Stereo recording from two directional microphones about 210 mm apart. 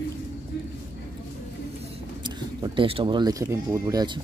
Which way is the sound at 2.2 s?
20° right (ahead or behind).